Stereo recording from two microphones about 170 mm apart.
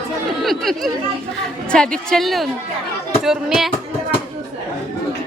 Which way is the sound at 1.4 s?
5° left (ahead or behind).